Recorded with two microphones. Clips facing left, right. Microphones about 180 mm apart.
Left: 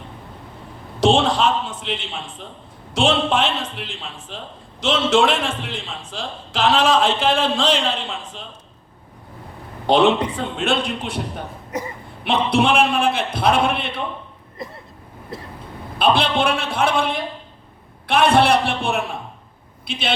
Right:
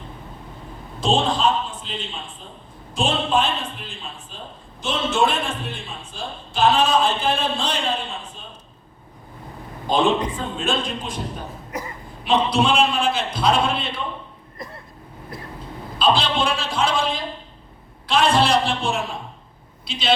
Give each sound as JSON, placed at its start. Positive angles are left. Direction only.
{"t": 0.9, "sound": "a man's voice", "side_deg": 90}
{"t": 9.8, "sound": "a man's voice", "side_deg": 70}
{"t": 16.0, "sound": "a man's voice", "side_deg": 60}